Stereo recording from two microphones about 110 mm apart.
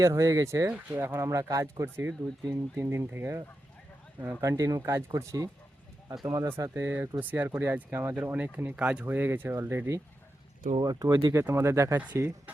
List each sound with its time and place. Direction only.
0.0 s speech: 25° right (ahead or behind)
6.6 s speech: 20° right (ahead or behind)
10.8 s speech: 35° right (ahead or behind)